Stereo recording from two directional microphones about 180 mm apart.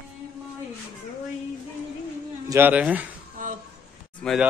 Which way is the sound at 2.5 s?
10° right (ahead or behind).